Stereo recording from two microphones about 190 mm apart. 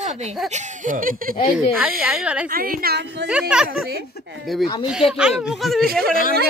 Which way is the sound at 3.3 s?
5° right (ahead or behind).